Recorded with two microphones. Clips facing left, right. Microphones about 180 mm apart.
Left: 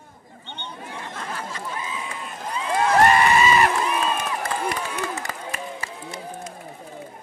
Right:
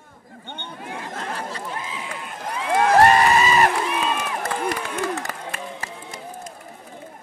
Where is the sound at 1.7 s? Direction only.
65° right (ahead or behind).